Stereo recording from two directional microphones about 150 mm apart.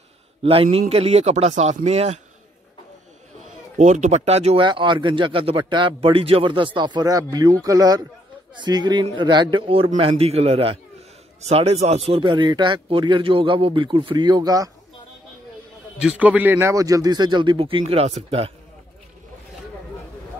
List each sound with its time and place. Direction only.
0.4 s a man's voice: 40° right (ahead or behind)
3.7 s a man's voice: 55° right (ahead or behind)
4.6 s a man's voice: 30° right (ahead or behind)
16.0 s a man's voice: 10° right (ahead or behind); by 18.5 s 45° right (ahead or behind)